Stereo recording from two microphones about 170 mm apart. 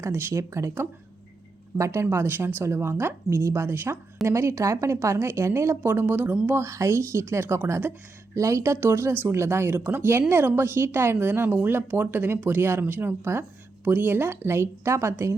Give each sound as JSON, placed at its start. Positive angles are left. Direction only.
{"t": 0.0, "sound": "speech", "side_deg": -15}